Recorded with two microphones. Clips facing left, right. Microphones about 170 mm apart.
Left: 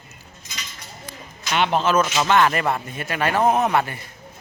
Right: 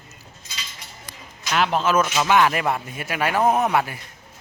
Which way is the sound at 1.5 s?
Centre (ahead or behind).